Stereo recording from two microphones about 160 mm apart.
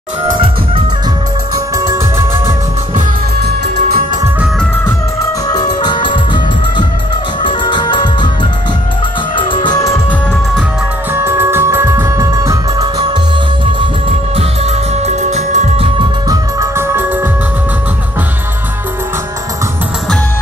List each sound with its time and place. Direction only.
5.5 s music: 25° left (ahead or behind)
7.4 s music: 30° left (ahead or behind)
9.5 s music: 30° left (ahead or behind)
11.2 s music: 15° right (ahead or behind)
14.3 s music: 40° right (ahead or behind)
16.3 s music: 20° right (ahead or behind)